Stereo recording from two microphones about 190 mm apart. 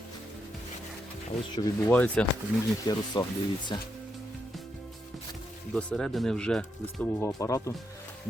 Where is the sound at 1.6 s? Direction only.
20° left (ahead or behind).